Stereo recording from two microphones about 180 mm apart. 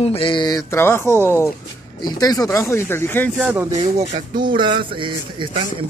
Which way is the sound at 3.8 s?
40° right (ahead or behind).